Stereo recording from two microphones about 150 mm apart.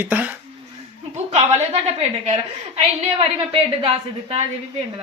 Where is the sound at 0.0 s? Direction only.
10° right (ahead or behind).